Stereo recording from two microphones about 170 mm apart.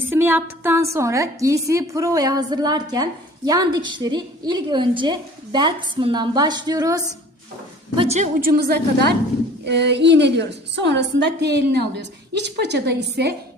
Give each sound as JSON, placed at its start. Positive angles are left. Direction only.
{"t": 0.1, "sound": "a sound", "side_deg": -10}
{"t": 0.9, "sound": "a woman's voice", "side_deg": -15}
{"t": 7.9, "sound": "a woman's voice", "side_deg": -40}
{"t": 8.4, "sound": "a woman's voice", "side_deg": -60}
{"t": 9.6, "sound": "a woman's voice", "side_deg": -90}